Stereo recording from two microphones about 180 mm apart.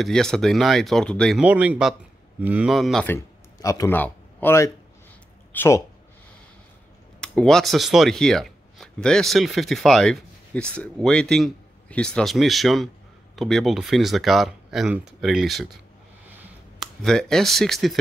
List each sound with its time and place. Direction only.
0.0 s speech: 5° left (ahead or behind)
1.4 s speech: 10° right (ahead or behind)
3.1 s speech: 15° left (ahead or behind)
7.2 s speech: 5° left (ahead or behind)
16.8 s speech: 5° left (ahead or behind)